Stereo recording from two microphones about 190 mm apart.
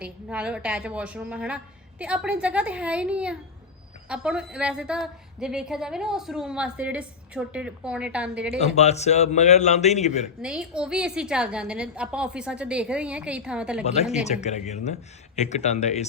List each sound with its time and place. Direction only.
0.0 s a woman's voice: 5° right (ahead or behind)
8.5 s a man's voice: 35° left (ahead or behind)
10.4 s a woman's voice: 5° right (ahead or behind)
13.8 s a man's voice: 35° left (ahead or behind)